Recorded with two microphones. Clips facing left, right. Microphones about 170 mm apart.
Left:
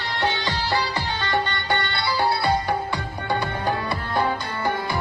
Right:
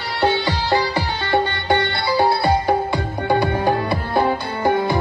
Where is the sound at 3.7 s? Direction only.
40° right (ahead or behind).